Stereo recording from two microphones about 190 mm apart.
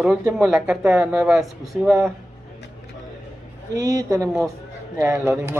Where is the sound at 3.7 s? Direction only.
20° right (ahead or behind).